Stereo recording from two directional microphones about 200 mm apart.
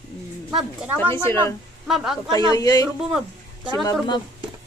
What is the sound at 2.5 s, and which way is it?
Speech, 20° left (ahead or behind).